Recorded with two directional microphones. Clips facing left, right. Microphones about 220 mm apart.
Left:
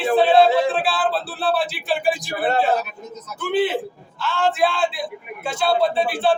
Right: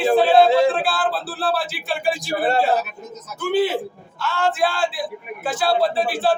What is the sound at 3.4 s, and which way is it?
Speech, centre (ahead or behind).